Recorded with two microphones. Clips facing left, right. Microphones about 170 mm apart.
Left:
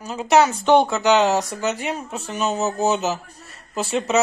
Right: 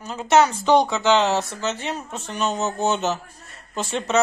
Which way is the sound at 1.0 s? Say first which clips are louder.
Left 2 dB; 15° left (ahead or behind).